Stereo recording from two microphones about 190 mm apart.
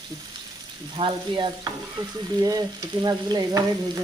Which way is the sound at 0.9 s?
25° right (ahead or behind).